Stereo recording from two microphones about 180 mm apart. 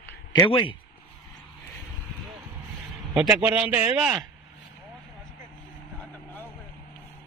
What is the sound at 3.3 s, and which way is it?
Speech, 10° right (ahead or behind).